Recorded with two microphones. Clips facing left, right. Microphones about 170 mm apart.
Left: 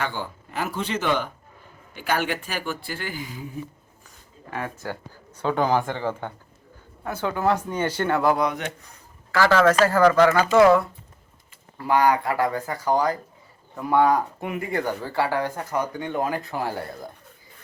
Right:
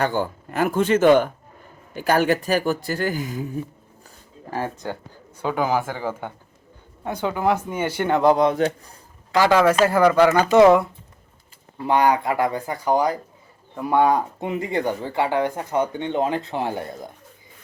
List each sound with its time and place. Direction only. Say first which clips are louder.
0.0 s speech: right 7 dB; 45° right (ahead or behind)
4.8 s speech: right 2 dB; 20° right (ahead or behind)
5.4 s speech: even; 10° right (ahead or behind); by 9.0 s 30° right (ahead or behind)
9.3 s speech: right 2 dB; 15° right (ahead or behind)